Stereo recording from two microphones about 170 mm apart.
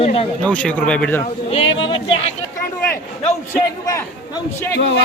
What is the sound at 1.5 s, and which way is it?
Speech, 30° left (ahead or behind).